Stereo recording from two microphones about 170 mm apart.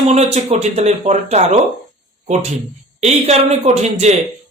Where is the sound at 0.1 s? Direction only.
40° right (ahead or behind).